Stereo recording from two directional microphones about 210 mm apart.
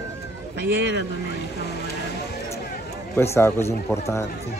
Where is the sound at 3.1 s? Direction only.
10° left (ahead or behind).